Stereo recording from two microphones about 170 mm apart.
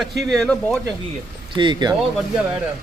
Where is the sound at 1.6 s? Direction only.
25° right (ahead or behind).